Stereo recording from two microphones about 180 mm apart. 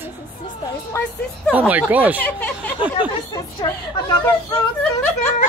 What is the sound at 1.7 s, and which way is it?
Speech, 10° right (ahead or behind).